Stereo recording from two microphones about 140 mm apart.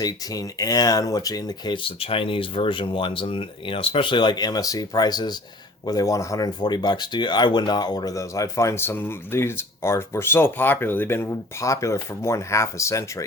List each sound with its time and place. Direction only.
0.0 s speech: 25° left (ahead or behind)